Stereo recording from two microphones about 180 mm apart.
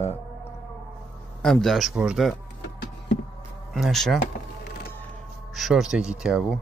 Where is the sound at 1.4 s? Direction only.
Centre (ahead or behind).